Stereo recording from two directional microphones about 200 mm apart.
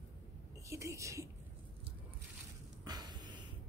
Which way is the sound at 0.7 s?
15° right (ahead or behind).